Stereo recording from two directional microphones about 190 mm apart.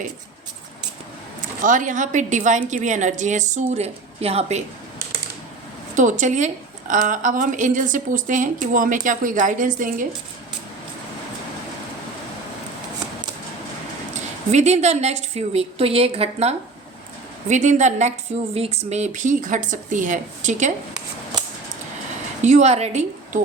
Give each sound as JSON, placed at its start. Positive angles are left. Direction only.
{"t": 1.4, "sound": "a woman's voice", "side_deg": -45}
{"t": 5.9, "sound": "a woman's voice", "side_deg": -40}
{"t": 14.5, "sound": "a woman's voice", "side_deg": -35}
{"t": 22.4, "sound": "a woman's voice", "side_deg": -40}